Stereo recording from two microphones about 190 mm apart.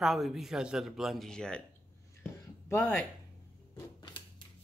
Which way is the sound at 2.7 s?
10° left (ahead or behind).